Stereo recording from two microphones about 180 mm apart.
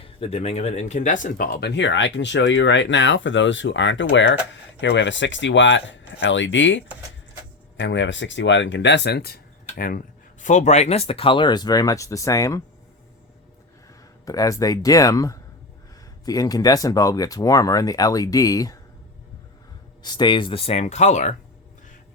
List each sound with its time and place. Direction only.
0.0 s speech: 35° left (ahead or behind); by 10.0 s 55° left (ahead or behind)
10.4 s speech: 40° left (ahead or behind); by 12.6 s 15° left (ahead or behind)
14.3 s speech: 20° left (ahead or behind)
20.0 s speech: 25° left (ahead or behind); by 21.3 s 40° left (ahead or behind)